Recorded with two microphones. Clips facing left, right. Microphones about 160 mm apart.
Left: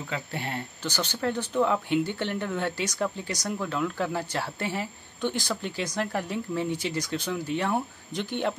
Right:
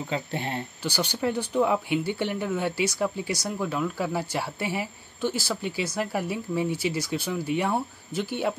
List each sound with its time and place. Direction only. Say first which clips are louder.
0.0 s speech: right 3 dB; 25° right (ahead or behind)
0.8 s speech: right 2 dB; 10° right (ahead or behind)